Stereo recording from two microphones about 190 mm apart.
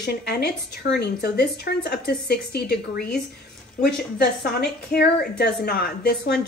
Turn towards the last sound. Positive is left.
turn(degrees=55)  # may be behind; listen again after turning